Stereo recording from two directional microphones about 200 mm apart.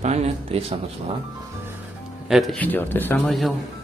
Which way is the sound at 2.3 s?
Centre (ahead or behind).